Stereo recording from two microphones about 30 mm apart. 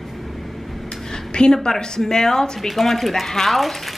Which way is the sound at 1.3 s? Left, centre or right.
Left.